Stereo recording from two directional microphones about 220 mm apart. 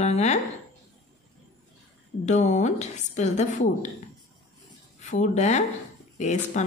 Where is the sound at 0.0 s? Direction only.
30° left (ahead or behind).